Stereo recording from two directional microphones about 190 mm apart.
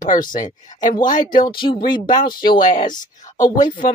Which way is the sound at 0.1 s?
45° left (ahead or behind).